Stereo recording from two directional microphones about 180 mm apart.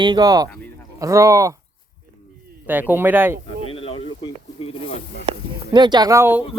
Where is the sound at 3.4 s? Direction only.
30° left (ahead or behind).